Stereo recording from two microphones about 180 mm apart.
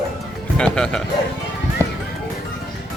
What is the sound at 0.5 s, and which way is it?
Music, 5° left (ahead or behind).